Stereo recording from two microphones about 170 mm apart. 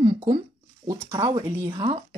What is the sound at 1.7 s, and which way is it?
Speech, 30° right (ahead or behind).